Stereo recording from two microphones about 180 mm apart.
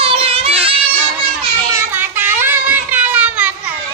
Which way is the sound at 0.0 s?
30° right (ahead or behind).